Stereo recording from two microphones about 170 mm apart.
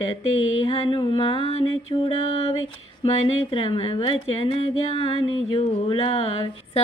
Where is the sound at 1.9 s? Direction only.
25° left (ahead or behind).